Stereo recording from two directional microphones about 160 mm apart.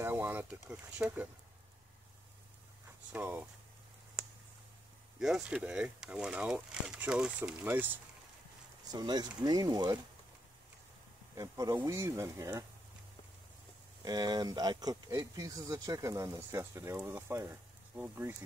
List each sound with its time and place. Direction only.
0.0 s speech: 15° right (ahead or behind)
3.1 s speech: 10° right (ahead or behind)
5.2 s speech: 5° right (ahead or behind)
8.9 s speech: 25° right (ahead or behind)
11.3 s speech: 20° right (ahead or behind)
14.0 s speech: 25° right (ahead or behind)